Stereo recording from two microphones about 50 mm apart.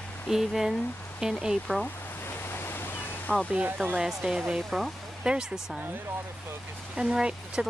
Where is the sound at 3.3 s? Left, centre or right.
Left.